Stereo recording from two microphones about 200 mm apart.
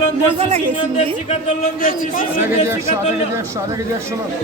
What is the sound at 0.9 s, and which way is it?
A man's voice, 35° left (ahead or behind).